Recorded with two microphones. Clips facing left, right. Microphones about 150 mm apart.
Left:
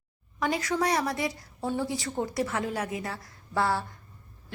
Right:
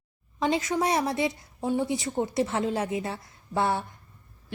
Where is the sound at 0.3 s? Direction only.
25° right (ahead or behind).